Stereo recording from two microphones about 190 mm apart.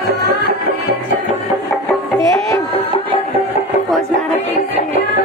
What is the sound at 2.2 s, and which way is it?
Music, 15° left (ahead or behind).